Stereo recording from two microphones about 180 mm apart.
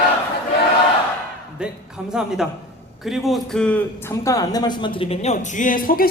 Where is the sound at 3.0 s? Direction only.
Centre (ahead or behind).